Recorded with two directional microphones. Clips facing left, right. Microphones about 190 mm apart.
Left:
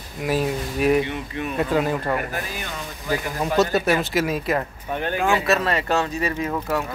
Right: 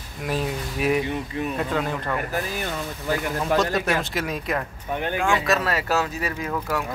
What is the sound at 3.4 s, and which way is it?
Speech, 5° left (ahead or behind).